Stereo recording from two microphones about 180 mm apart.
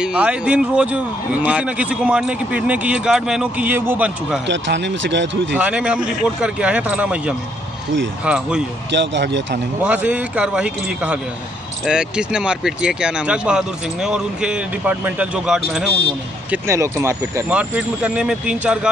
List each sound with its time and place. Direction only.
0.0 s speech: 5° right (ahead or behind)
4.5 s speech: 80° right
5.6 s speech: 5° right (ahead or behind)
8.9 s speech: 75° right (ahead or behind)
9.8 s speech: 10° right (ahead or behind)
16.4 s speech: 15° right (ahead or behind)